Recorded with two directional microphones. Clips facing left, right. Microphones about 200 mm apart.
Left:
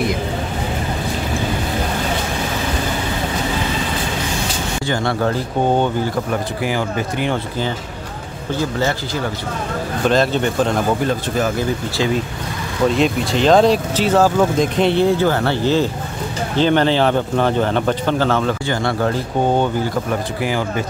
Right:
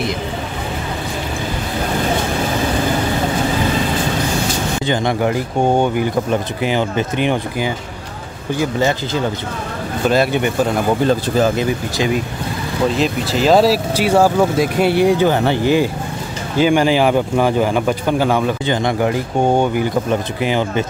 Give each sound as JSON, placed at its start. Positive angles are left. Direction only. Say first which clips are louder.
{"t": 4.8, "sound": "speech", "louder": "right 1 dB", "side_deg": -20}
{"t": 11.3, "sound": "speech", "louder": "right 3 dB", "side_deg": -30}
{"t": 12.9, "sound": "speech", "louder": "left 1 dB", "side_deg": 0}